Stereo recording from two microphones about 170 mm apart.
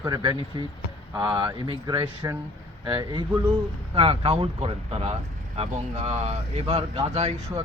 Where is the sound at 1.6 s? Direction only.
30° right (ahead or behind).